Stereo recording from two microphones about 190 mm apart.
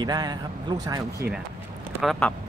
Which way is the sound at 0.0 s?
20° right (ahead or behind).